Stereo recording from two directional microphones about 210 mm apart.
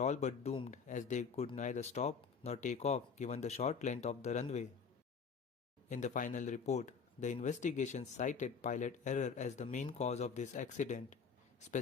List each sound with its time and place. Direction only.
0.0 s speech: 30° left (ahead or behind)
5.9 s speech: 35° left (ahead or behind)